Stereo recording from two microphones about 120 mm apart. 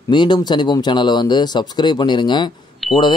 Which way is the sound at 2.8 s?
Centre (ahead or behind).